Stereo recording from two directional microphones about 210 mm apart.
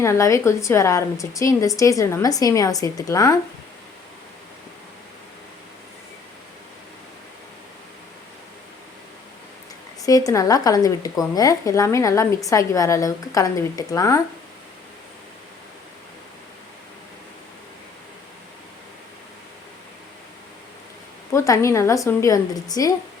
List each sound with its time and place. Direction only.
0.0 s speech: 15° left (ahead or behind)
10.0 s speech: 15° left (ahead or behind)
21.3 s speech: 15° left (ahead or behind)